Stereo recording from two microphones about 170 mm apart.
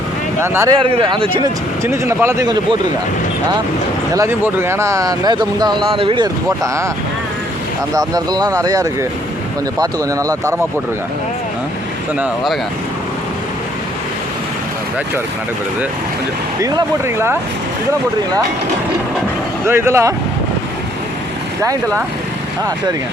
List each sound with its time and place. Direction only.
0.3 s speech: 15° right (ahead or behind)
0.8 s speech: 30° right (ahead or behind)
1.8 s speech: 15° right (ahead or behind)
4.1 s speech: 15° right (ahead or behind)
7.9 s speech: 20° right (ahead or behind)
16.6 s speech: 20° right (ahead or behind)
19.6 s speech: 15° right (ahead or behind)